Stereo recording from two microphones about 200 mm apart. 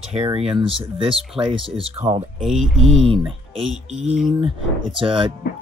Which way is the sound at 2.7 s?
30° right (ahead or behind).